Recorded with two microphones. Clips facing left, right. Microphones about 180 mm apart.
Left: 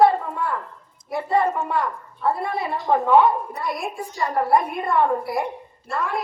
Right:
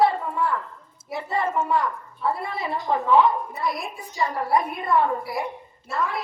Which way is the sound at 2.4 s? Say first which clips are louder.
Left 3 dB; 50° left (ahead or behind).